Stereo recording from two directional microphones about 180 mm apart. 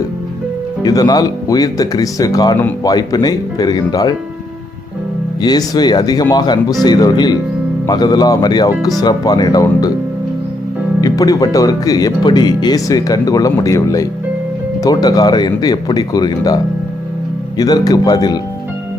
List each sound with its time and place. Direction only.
0.8 s speech: 20° left (ahead or behind)
5.4 s speech: 20° left (ahead or behind)
11.0 s speech: 20° left (ahead or behind)
17.6 s speech: 20° left (ahead or behind)